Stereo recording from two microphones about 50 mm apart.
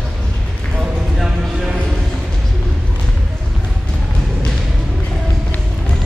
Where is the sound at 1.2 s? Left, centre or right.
Centre.